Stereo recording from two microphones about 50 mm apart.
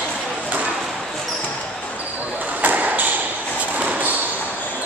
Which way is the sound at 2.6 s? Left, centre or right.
Right.